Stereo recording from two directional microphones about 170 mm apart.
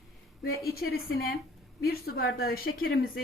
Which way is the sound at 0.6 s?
65° left (ahead or behind).